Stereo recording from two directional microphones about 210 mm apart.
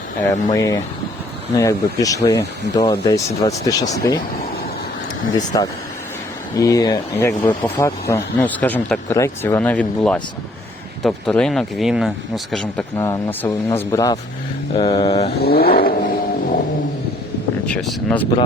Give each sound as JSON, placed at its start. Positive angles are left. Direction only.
{"t": 0.3, "sound": "speech", "side_deg": 15}
{"t": 5.5, "sound": "speech", "side_deg": 20}
{"t": 13.0, "sound": "speech", "side_deg": 15}
{"t": 14.8, "sound": "vehicle", "side_deg": 20}
{"t": 15.4, "sound": "vehicle", "side_deg": 45}
{"t": 17.8, "sound": "speech", "side_deg": 5}